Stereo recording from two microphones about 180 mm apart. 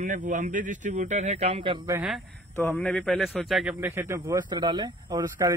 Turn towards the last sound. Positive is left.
turn(degrees=-20)  # may be behind; listen again after turning